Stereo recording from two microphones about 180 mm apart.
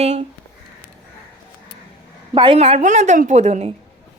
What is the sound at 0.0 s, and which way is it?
Speech, 35° right (ahead or behind).